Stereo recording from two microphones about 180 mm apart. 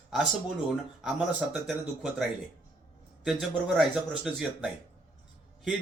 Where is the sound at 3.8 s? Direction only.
Centre (ahead or behind).